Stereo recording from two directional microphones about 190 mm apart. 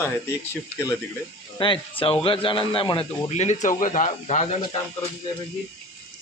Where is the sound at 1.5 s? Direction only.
25° left (ahead or behind).